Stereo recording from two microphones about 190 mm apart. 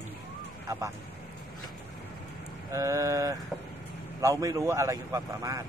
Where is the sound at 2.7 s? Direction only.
15° right (ahead or behind).